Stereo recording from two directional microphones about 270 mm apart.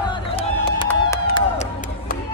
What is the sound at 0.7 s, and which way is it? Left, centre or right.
Crowd, centre.